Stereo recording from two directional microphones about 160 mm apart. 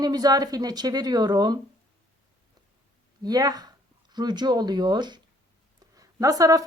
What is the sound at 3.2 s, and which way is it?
A woman's voice, 25° right (ahead or behind).